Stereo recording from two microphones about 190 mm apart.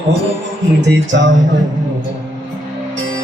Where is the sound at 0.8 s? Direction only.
70° right (ahead or behind).